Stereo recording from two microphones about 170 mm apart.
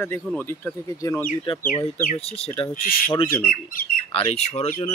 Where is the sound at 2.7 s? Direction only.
55° left (ahead or behind).